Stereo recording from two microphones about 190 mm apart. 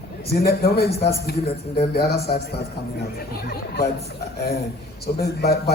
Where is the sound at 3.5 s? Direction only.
55° left (ahead or behind).